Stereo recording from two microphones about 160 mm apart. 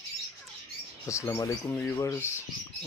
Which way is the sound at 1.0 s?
15° left (ahead or behind).